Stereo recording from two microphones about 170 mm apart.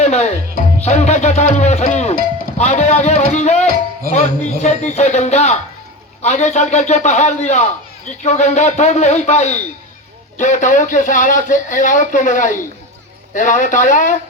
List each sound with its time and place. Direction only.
0.0 s music: 40° left (ahead or behind)
2.6 s a sound: 40° left (ahead or behind)
4.1 s a man's voice: 40° left (ahead or behind)